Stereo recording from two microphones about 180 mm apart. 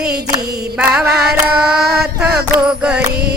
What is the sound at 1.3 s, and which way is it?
Carnatic music, 60° right (ahead or behind).